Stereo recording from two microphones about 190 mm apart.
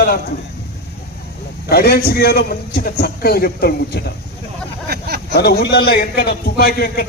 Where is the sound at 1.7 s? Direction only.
55° left (ahead or behind).